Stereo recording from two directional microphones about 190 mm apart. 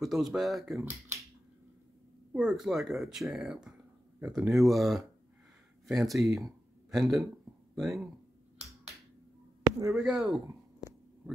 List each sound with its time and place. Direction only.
0.0 s speech: centre (ahead or behind)
2.3 s a man's voice: 5° right (ahead or behind)
9.6 s a sound: 20° right (ahead or behind)
9.9 s speech: centre (ahead or behind)